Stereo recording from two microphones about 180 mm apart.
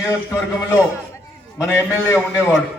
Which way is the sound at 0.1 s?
15° left (ahead or behind).